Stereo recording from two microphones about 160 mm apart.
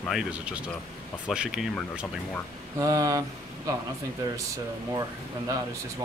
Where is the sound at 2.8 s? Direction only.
20° right (ahead or behind).